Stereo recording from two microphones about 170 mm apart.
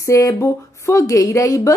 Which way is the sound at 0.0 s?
20° left (ahead or behind).